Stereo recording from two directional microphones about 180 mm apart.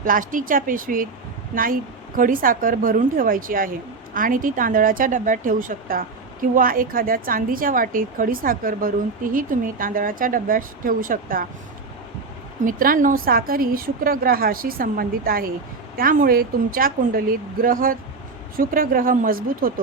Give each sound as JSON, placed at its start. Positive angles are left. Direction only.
{"t": 0.0, "sound": "a woman's voice", "side_deg": -50}
{"t": 12.6, "sound": "a woman's voice", "side_deg": -50}